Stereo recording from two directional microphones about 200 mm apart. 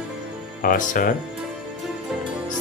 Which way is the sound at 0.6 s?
45° left (ahead or behind).